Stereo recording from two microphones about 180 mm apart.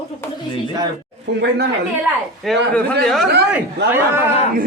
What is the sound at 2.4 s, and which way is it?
Speech, 5° left (ahead or behind).